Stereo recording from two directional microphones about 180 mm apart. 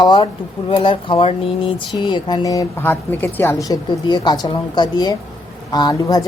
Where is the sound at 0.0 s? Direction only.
25° left (ahead or behind).